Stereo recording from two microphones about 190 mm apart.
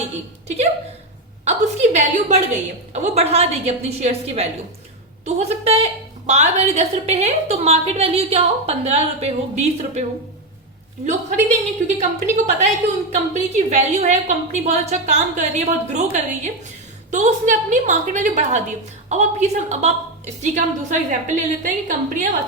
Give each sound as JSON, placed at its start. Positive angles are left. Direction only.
{"t": 0.4, "sound": "a woman's voice", "side_deg": -35}